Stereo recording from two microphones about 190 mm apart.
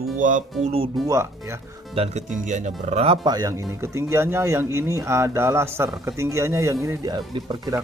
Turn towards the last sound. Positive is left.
turn(degrees=-20)  # may be behind; listen again after turning